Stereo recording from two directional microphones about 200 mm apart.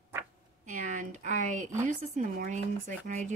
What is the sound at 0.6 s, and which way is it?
Speech, 40° right (ahead or behind).